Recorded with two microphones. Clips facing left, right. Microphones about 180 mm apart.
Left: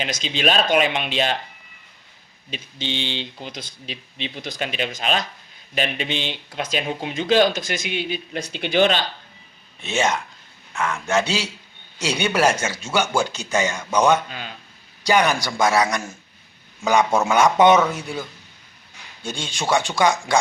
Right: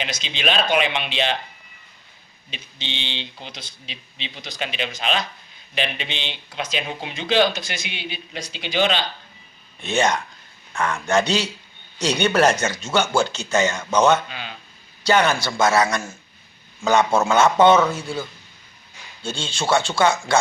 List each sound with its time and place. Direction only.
0.0 s speech: 45° left (ahead or behind)
2.5 s speech: 45° left (ahead or behind)
9.8 s speech: 5° left (ahead or behind)
19.2 s speech: 15° left (ahead or behind)